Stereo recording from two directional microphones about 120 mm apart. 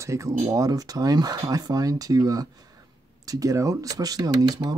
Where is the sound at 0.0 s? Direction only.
25° right (ahead or behind).